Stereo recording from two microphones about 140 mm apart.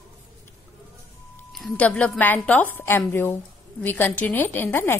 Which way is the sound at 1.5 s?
5° left (ahead or behind).